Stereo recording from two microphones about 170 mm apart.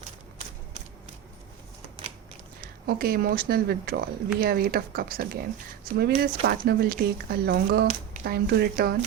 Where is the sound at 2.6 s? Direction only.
60° right (ahead or behind).